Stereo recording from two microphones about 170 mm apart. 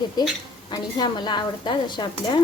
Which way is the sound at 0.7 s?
25° left (ahead or behind).